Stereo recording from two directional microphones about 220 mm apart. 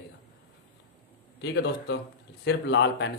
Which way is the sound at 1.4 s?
55° left (ahead or behind).